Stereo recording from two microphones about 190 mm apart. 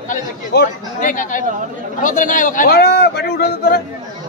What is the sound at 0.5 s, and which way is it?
Speech, 55° left (ahead or behind).